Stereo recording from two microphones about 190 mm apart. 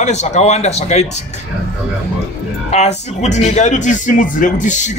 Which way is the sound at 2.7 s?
35° left (ahead or behind).